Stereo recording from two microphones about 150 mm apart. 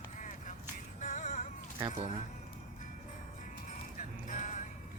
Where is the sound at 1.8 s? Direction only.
30° right (ahead or behind).